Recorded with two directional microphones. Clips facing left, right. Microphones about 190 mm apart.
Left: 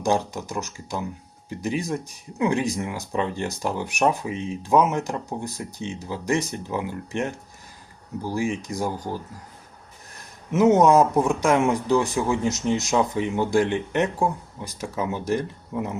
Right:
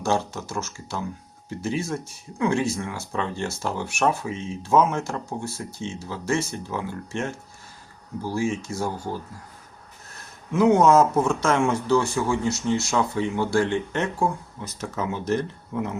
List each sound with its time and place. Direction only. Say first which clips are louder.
0.0 s speech: left 1 dB; 15° left (ahead or behind)
10.2 s speech: left 1 dB; 20° left (ahead or behind)